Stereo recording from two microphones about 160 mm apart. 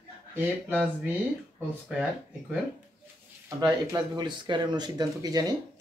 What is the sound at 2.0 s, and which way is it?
Speech, 10° right (ahead or behind).